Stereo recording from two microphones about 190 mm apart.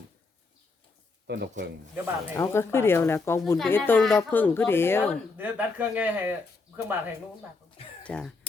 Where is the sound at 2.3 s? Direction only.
15° left (ahead or behind).